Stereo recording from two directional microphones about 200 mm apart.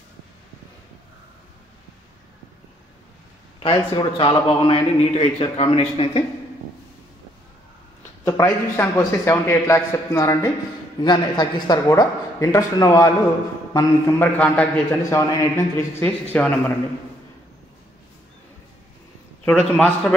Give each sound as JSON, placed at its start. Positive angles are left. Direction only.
{"t": 3.5, "sound": "a man's voice", "side_deg": 25}
{"t": 8.3, "sound": "a man's voice", "side_deg": 15}
{"t": 19.4, "sound": "a man's voice", "side_deg": 5}